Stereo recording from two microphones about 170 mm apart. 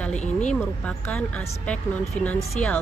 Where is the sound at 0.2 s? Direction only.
45° left (ahead or behind).